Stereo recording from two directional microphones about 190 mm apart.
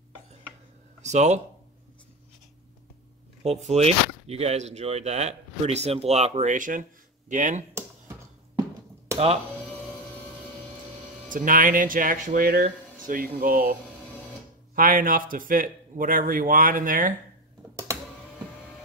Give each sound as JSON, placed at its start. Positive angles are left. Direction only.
{"t": 1.0, "sound": "speech", "side_deg": -40}
{"t": 3.4, "sound": "speech", "side_deg": -35}
{"t": 11.2, "sound": "a man's voice", "side_deg": -45}
{"t": 14.8, "sound": "a man's voice", "side_deg": -50}